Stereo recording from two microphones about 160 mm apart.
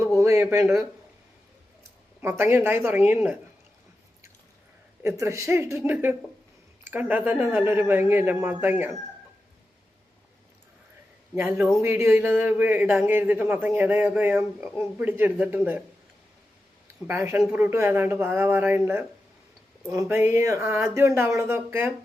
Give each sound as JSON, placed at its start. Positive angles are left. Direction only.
{"t": 0.2, "sound": "a sound", "side_deg": -20}
{"t": 2.2, "sound": "a man's voice", "side_deg": -15}
{"t": 5.0, "sound": "a man's voice", "side_deg": -20}
{"t": 11.3, "sound": "a man's voice", "side_deg": -15}
{"t": 17.1, "sound": "a man's voice", "side_deg": -15}